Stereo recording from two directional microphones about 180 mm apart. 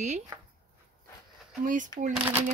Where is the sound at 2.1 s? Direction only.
10° right (ahead or behind).